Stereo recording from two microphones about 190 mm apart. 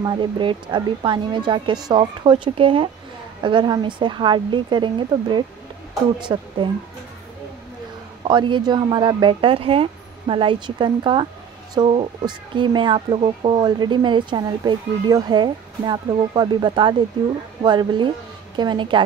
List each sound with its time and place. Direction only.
0.0 s speech: 25° right (ahead or behind)
8.2 s speech: 25° right (ahead or behind)